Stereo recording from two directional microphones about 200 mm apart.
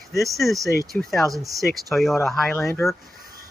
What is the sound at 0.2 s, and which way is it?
Speech, centre (ahead or behind).